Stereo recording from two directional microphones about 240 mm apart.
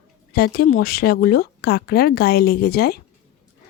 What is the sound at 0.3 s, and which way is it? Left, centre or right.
Speech, left.